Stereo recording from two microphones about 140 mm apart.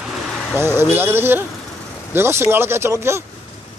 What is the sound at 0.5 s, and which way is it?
Speech, 15° right (ahead or behind).